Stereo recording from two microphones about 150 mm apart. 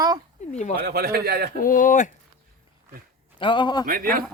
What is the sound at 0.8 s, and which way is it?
Speech, 90° right.